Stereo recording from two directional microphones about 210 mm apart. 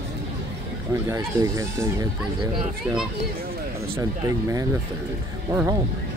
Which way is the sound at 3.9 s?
15° right (ahead or behind).